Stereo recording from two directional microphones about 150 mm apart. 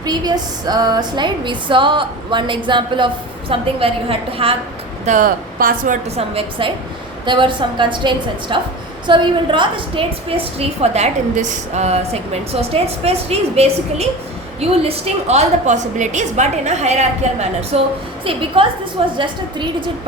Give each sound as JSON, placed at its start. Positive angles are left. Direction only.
{"t": 0.0, "sound": "a woman's voice", "side_deg": -25}
{"t": 5.0, "sound": "speech", "side_deg": -65}
{"t": 6.1, "sound": "a woman's voice", "side_deg": -40}